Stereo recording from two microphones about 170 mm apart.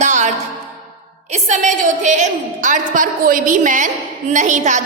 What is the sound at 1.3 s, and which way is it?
A woman's voice, 40° right (ahead or behind).